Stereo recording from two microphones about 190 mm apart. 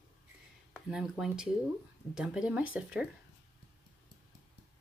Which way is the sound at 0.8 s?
5° right (ahead or behind).